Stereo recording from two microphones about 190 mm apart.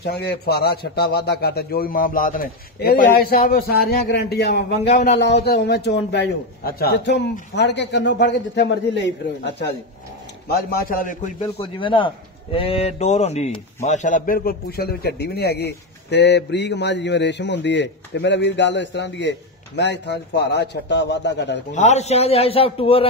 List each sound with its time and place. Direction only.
0.0 s a man's voice: 55° left (ahead or behind)
4.9 s a man's voice: 40° left (ahead or behind)
5.2 s a man's voice: 60° left (ahead or behind)
10.5 s a man's voice: 55° left (ahead or behind)
11.4 s a man's voice: 25° left (ahead or behind); by 21.5 s 65° left (ahead or behind)
21.7 s a man's voice: 35° left (ahead or behind)